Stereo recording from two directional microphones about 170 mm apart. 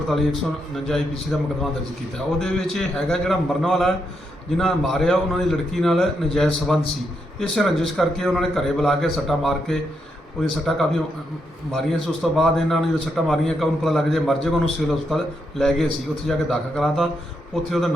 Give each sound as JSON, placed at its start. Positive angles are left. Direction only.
{"t": 1.3, "sound": "a man's voice", "side_deg": 0}